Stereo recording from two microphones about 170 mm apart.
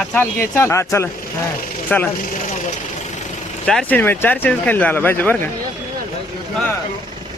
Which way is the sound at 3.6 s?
5° left (ahead or behind).